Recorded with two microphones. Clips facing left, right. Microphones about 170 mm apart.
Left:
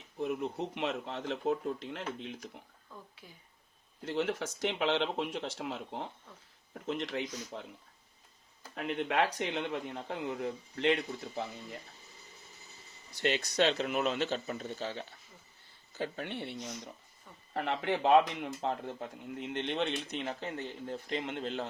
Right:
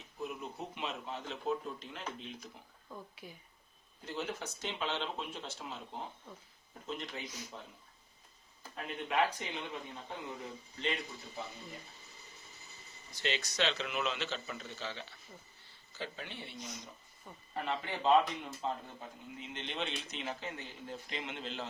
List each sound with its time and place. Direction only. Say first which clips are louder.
0.2 s speech: left 7 dB; 70° left (ahead or behind)
2.9 s speech: right 3 dB; 15° right (ahead or behind)
4.0 s speech: left 7 dB; 80° left
6.8 s speech: left 7 dB; 85° left
8.7 s speech: left 3 dB; 70° left (ahead or behind)
13.1 s speech: left 6 dB; 55° left (ahead or behind)